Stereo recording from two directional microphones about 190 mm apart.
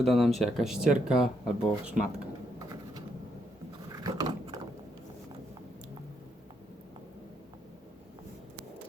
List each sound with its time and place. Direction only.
0.0 s speech: centre (ahead or behind)
3.9 s vehicle: 20° right (ahead or behind)